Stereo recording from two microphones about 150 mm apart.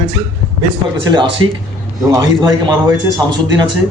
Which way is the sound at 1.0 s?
30° right (ahead or behind).